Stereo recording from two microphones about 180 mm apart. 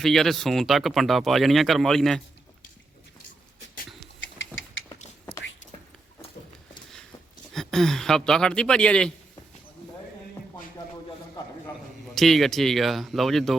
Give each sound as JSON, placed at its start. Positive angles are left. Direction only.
{"t": 0.0, "sound": "speech", "side_deg": 0}
{"t": 4.2, "sound": "a sound", "side_deg": 90}
{"t": 7.5, "sound": "speech", "side_deg": 0}
{"t": 12.1, "sound": "speech", "side_deg": 0}